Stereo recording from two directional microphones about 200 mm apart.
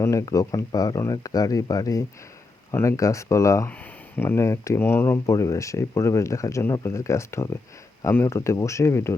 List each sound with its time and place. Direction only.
0.0 s speech: 15° left (ahead or behind)